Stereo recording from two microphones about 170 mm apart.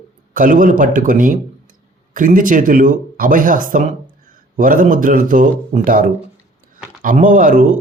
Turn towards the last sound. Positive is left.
turn(degrees=-50)  # may be behind; listen again after turning